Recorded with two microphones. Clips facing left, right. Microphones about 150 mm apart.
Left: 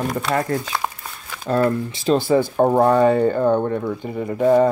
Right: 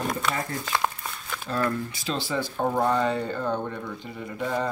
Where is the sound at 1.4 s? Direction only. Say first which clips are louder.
Left 9 dB; 40° left (ahead or behind).